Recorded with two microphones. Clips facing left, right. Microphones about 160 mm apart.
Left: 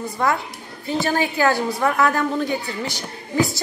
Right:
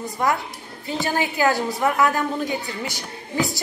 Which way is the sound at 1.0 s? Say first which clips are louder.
Left 1 dB; 15° right (ahead or behind).